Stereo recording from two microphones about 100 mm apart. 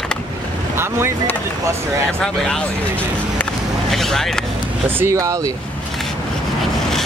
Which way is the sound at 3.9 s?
5° left (ahead or behind).